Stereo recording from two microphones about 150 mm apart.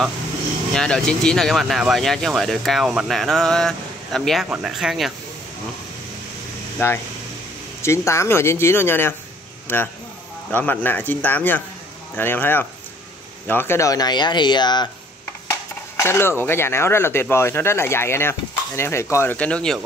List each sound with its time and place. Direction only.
0.7 s speech: 5° left (ahead or behind)
7.8 s speech: 20° left (ahead or behind)
16.0 s speech: 15° left (ahead or behind)